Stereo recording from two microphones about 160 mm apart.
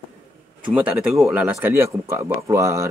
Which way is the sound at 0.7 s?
5° right (ahead or behind).